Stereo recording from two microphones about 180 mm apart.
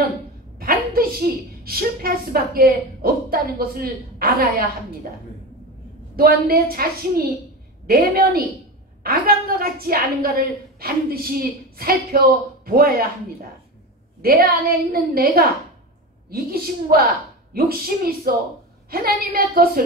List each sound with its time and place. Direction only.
0.6 s a sound: 55° right (ahead or behind)
2.5 s a woman's voice: 55° right (ahead or behind)
6.1 s a woman's voice: 55° right (ahead or behind)
14.2 s a woman's voice: 55° right (ahead or behind)